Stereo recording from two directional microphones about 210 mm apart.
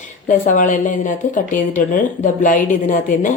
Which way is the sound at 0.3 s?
40° left (ahead or behind).